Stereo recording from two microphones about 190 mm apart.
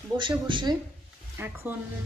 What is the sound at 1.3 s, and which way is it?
Speech, 10° right (ahead or behind).